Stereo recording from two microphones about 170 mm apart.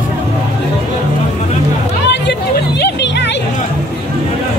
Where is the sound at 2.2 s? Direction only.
90° left.